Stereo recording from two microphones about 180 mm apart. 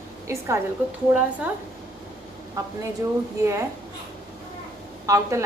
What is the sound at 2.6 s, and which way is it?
Speech, 20° right (ahead or behind).